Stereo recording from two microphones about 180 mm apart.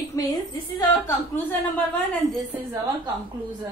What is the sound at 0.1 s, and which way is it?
Speech, 20° left (ahead or behind).